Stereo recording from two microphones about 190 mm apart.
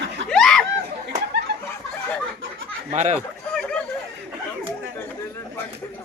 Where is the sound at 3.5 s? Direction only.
5° left (ahead or behind).